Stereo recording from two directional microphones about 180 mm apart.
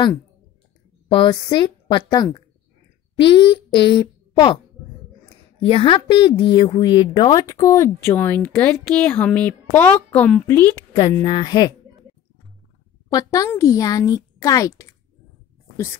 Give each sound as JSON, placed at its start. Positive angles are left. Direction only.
{"t": 1.0, "sound": "a woman's voice", "side_deg": 25}
{"t": 5.6, "sound": "speech", "side_deg": 30}
{"t": 13.1, "sound": "speech", "side_deg": 20}